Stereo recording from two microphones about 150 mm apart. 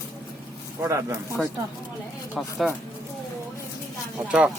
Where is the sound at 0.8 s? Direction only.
20° right (ahead or behind).